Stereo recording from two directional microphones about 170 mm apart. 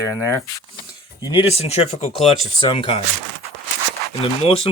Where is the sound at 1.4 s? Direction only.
40° left (ahead or behind).